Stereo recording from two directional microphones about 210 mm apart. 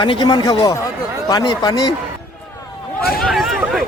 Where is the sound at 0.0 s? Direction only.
20° left (ahead or behind).